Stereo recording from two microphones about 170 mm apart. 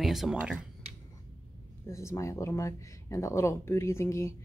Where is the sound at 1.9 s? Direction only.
15° left (ahead or behind).